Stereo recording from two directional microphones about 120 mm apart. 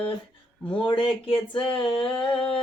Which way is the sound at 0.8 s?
45° left (ahead or behind).